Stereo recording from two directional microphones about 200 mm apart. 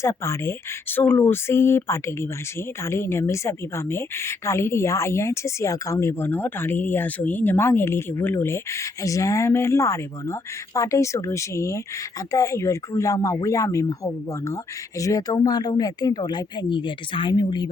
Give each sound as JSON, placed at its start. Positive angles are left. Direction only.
{"t": 0.0, "sound": "a woman's voice", "side_deg": 15}